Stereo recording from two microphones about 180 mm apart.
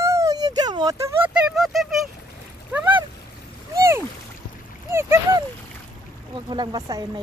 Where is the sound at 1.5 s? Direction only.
Centre (ahead or behind).